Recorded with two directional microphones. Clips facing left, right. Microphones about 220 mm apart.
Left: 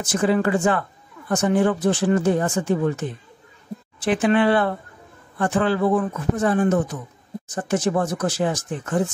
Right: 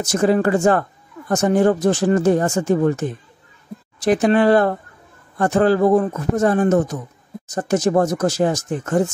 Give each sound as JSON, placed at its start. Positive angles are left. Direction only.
{"t": 0.0, "sound": "speech", "side_deg": -40}